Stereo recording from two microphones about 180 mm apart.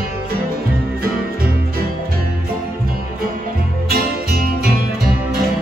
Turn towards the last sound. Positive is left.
turn(degrees=-55)  # may be behind; listen again after turning